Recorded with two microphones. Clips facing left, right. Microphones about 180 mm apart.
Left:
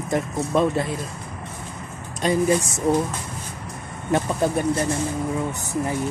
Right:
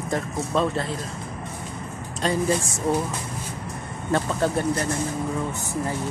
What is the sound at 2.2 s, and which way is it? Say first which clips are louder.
Speech: left 3 dB; 15° left (ahead or behind).